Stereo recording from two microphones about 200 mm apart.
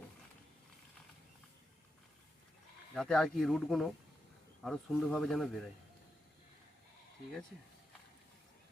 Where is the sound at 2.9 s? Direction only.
Centre (ahead or behind).